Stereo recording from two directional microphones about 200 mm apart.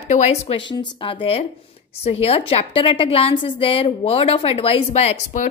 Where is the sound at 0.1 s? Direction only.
35° left (ahead or behind).